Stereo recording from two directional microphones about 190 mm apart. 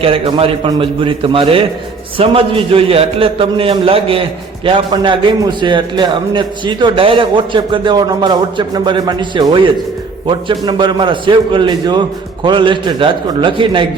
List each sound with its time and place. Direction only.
0.0 s a man's voice: 30° right (ahead or behind)